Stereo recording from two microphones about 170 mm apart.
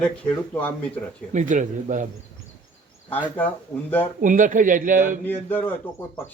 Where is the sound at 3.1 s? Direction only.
10° left (ahead or behind).